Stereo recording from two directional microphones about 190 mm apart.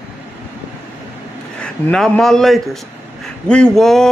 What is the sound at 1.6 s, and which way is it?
A man's voice, 5° left (ahead or behind).